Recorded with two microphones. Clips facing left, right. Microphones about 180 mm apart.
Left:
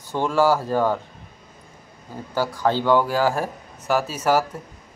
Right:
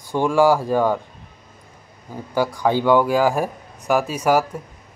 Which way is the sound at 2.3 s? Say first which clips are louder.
Right 2 dB; 15° right (ahead or behind).